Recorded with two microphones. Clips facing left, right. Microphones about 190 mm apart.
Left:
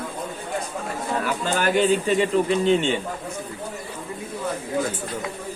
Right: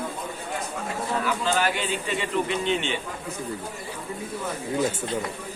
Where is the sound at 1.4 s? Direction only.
45° left (ahead or behind).